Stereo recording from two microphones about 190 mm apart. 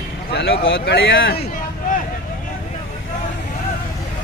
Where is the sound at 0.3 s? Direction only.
60° left (ahead or behind).